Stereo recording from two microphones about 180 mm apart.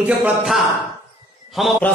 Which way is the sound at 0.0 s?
5° right (ahead or behind).